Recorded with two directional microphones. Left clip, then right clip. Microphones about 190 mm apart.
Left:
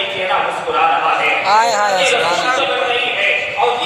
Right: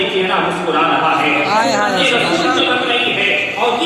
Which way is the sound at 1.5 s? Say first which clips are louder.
Left 2 dB; 40° left (ahead or behind).